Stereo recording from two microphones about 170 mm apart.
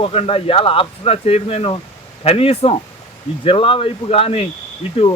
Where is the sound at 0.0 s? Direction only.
35° left (ahead or behind).